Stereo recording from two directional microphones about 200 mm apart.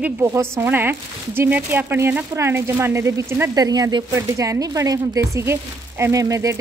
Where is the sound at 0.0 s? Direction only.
10° right (ahead or behind).